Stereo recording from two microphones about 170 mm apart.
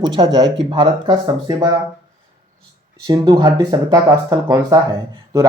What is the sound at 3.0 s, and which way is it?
Speech, 25° right (ahead or behind).